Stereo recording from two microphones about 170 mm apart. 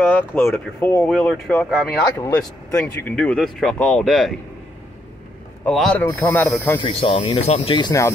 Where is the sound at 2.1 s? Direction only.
15° left (ahead or behind).